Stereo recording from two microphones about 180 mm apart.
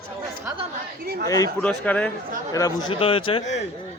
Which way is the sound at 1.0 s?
60° right (ahead or behind).